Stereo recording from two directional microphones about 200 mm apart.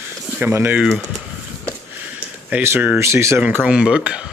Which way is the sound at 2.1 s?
10° right (ahead or behind).